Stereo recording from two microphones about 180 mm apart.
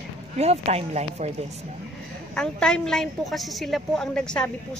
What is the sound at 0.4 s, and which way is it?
Speech, 35° right (ahead or behind).